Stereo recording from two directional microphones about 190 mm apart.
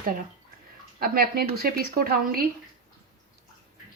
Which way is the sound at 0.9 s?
50° right (ahead or behind).